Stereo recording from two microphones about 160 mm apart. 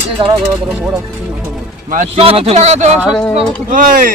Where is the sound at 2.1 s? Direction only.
35° right (ahead or behind).